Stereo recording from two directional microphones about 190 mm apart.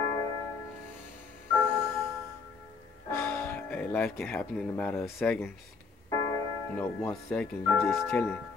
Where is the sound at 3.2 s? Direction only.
15° left (ahead or behind).